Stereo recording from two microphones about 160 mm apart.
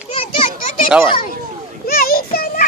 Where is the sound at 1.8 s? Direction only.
70° left (ahead or behind).